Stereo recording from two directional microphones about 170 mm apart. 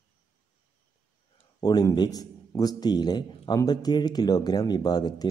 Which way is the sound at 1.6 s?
25° left (ahead or behind).